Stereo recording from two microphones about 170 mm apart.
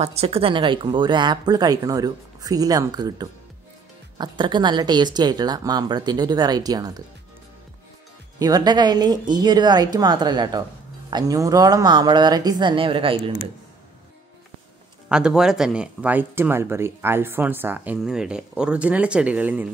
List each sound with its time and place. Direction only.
0.0 s speech: 35° right (ahead or behind); by 7.0 s 20° right (ahead or behind)
8.4 s speech: 20° right (ahead or behind)
15.0 s speech: 5° right (ahead or behind)